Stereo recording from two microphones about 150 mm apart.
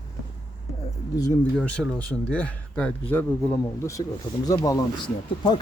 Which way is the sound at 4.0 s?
30° left (ahead or behind).